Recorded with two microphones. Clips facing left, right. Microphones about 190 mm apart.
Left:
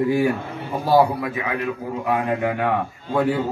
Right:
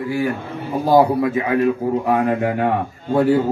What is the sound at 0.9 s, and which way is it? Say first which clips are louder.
A man's voice: right 3 dB; 25° right (ahead or behind).